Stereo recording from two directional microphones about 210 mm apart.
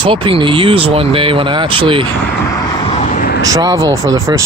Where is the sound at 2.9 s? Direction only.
35° left (ahead or behind).